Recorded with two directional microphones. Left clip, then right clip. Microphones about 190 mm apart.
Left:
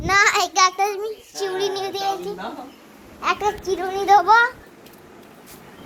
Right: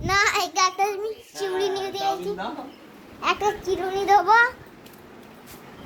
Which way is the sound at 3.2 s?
10° right (ahead or behind).